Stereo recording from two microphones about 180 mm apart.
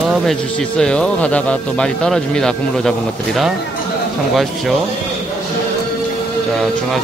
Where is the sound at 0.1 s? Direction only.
Centre (ahead or behind).